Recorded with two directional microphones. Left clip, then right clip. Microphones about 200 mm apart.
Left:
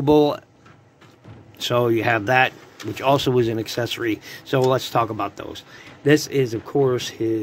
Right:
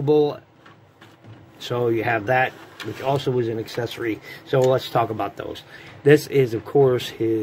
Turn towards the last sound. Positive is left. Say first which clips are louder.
# right 2 dB
turn(degrees=20)  # may be behind; listen again after turning